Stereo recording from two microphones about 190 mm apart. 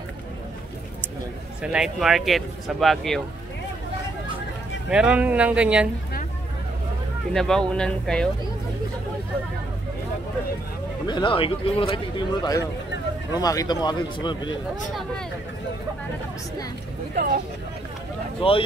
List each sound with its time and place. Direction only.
1.6 s speech: 5° right (ahead or behind)
4.8 s speech: 5° right (ahead or behind)
7.3 s speech: 5° left (ahead or behind)
11.1 s speech: 25° left (ahead or behind)
17.1 s speech: 50° right (ahead or behind)
18.4 s speech: 25° left (ahead or behind)